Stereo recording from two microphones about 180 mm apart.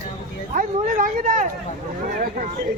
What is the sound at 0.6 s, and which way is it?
Speech, 50° right (ahead or behind).